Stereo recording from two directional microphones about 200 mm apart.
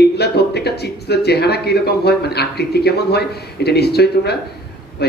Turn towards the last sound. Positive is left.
turn(degrees=55)  # may be behind; listen again after turning